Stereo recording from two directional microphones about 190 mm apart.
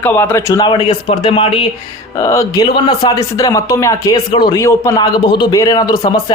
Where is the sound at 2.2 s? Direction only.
15° left (ahead or behind).